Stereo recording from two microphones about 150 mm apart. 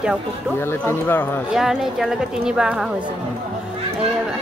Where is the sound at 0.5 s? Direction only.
15° left (ahead or behind).